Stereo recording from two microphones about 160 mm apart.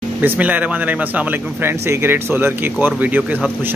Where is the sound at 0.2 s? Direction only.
10° right (ahead or behind).